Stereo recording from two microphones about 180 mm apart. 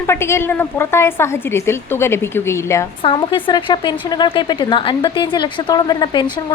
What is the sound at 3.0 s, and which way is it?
Speech, 25° left (ahead or behind).